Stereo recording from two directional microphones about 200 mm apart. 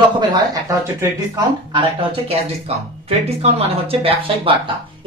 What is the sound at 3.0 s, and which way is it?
Speech, 30° right (ahead or behind).